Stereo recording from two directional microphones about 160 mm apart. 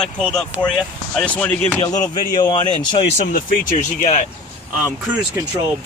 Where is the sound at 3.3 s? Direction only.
60° left (ahead or behind).